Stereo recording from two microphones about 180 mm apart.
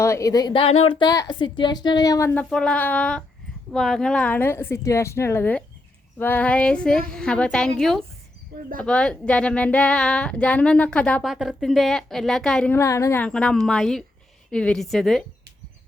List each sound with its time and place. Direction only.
0.0 s a woman's voice: 15° left (ahead or behind)
12.7 s speech: 15° left (ahead or behind)